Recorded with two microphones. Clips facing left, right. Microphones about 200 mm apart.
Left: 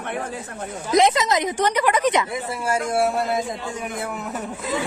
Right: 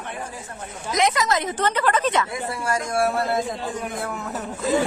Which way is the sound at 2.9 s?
Centre (ahead or behind).